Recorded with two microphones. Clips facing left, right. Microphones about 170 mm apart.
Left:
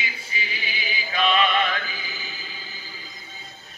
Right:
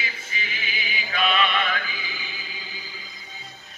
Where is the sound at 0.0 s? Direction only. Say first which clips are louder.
Left 1 dB; 35° left (ahead or behind).